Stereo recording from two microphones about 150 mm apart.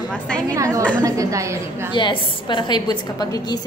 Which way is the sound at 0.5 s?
20° right (ahead or behind).